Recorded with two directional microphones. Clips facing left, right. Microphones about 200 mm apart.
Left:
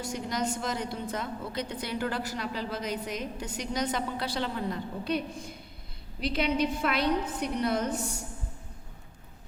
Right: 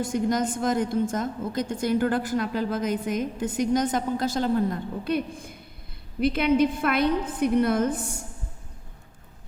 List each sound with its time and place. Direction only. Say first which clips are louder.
0.0 s a woman's voice: right 7 dB; 50° right (ahead or behind)